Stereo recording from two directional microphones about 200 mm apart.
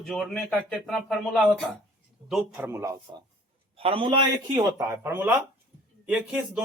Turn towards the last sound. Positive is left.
turn(degrees=-5)  # may be behind; listen again after turning